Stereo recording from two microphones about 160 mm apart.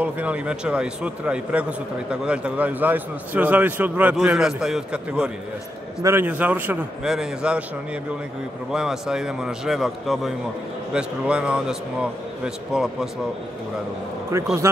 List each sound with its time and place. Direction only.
0.0 s a man's voice: 10° right (ahead or behind)
8.7 s a man's voice: 5° right (ahead or behind)
14.3 s speech: 20° right (ahead or behind)